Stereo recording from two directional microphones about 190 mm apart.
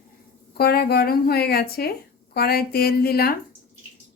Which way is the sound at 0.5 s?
55° left (ahead or behind).